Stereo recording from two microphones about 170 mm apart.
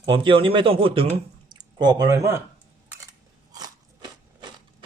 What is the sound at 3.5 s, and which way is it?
Biting, 25° right (ahead or behind).